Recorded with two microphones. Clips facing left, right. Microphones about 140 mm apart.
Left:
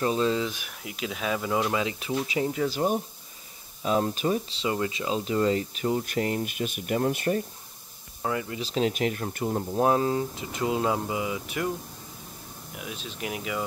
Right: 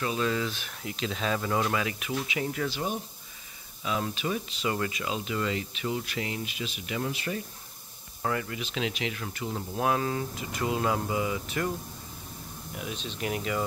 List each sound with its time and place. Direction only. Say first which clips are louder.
0.0 s speech: left 4 dB; 30° left (ahead or behind)
2.7 s speech: left 6 dB; 45° left (ahead or behind)
8.2 s speech: left 1 dB; 15° left (ahead or behind)
8.5 s speech: left 6 dB; 35° left (ahead or behind)
9.7 s speech: left 4 dB; 30° left (ahead or behind); by 11.7 s 15° left (ahead or behind)
12.7 s speech: right 1 dB; 5° left (ahead or behind)